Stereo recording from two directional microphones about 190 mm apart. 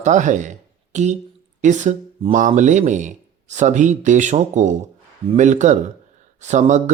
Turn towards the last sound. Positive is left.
turn(degrees=-40)  # may be behind; listen again after turning